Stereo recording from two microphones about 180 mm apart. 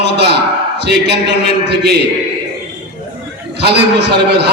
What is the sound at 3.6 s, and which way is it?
Speech, 65° right (ahead or behind).